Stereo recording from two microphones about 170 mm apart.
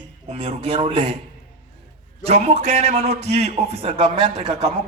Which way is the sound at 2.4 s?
40° right (ahead or behind).